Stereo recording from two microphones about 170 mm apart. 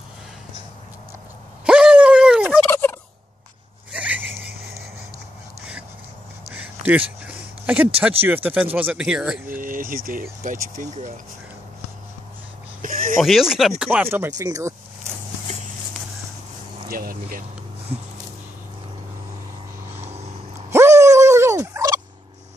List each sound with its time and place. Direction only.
1.7 s gargling: 5° right (ahead or behind)
2.7 s gobble: 15° left (ahead or behind)
3.9 s a sound: 10° right (ahead or behind)
6.5 s a sound: 10° right (ahead or behind)
8.2 s speech: 10° right (ahead or behind)
9.5 s speech: 55° right (ahead or behind)
12.8 s a sound: 55° right (ahead or behind)
13.2 s speech: centre (ahead or behind); by 14.7 s 20° right (ahead or behind)
16.9 s speech: 60° right (ahead or behind)
20.7 s turkey: 15° right (ahead or behind)